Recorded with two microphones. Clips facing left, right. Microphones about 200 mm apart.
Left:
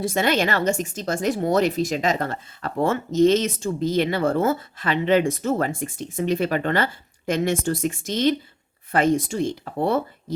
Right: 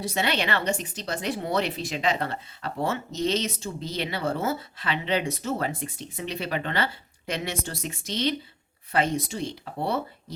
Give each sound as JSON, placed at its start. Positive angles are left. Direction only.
{"t": 0.0, "sound": "speech", "side_deg": 50}